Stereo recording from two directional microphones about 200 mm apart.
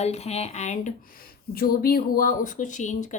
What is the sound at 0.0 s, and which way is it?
Speech, 30° left (ahead or behind).